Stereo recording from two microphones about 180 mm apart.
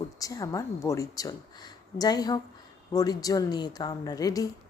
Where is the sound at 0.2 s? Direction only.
20° left (ahead or behind).